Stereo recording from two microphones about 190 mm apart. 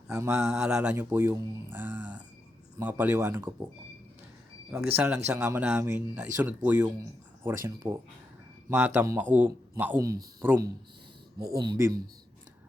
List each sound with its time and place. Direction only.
0.1 s speech: 15° right (ahead or behind)
0.6 s speech: 5° right (ahead or behind)
4.7 s speech: 15° right (ahead or behind)